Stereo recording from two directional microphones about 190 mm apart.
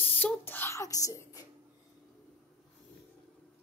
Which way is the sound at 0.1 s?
10° left (ahead or behind).